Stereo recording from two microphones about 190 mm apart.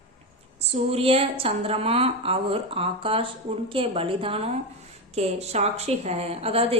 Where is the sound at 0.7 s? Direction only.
30° right (ahead or behind).